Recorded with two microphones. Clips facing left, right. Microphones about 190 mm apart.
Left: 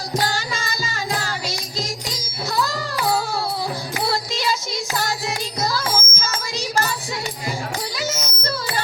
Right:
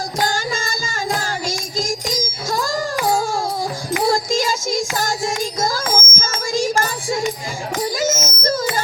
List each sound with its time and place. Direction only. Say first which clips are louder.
0.2 s music: right 4 dB; 45° right (ahead or behind)